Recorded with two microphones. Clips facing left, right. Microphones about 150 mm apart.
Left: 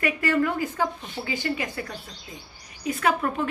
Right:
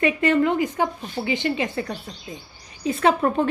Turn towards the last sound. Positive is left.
turn(degrees=-30)  # may be behind; listen again after turning